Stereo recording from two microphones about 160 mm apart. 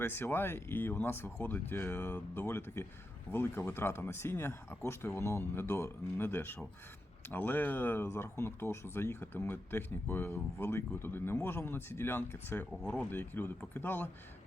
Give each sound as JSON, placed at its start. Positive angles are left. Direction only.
{"t": 0.0, "sound": "speech", "side_deg": 15}